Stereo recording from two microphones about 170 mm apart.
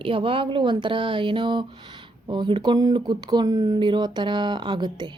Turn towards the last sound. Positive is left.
turn(degrees=-25)  # may be behind; listen again after turning